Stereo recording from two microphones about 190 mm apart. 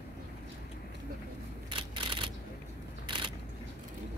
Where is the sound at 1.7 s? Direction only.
25° right (ahead or behind).